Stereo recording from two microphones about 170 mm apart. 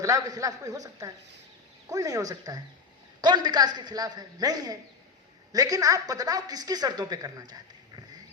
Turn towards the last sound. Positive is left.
turn(degrees=-25)  # may be behind; listen again after turning